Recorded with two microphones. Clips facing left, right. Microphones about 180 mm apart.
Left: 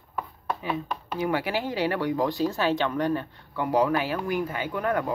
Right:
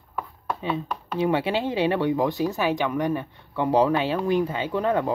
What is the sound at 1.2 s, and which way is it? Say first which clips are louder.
Speech: right 4 dB; 25° right (ahead or behind).